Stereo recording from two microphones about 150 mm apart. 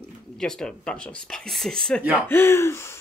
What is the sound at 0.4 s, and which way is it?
Speech, 5° left (ahead or behind).